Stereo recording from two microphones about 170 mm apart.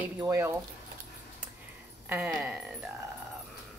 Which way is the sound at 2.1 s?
5° right (ahead or behind).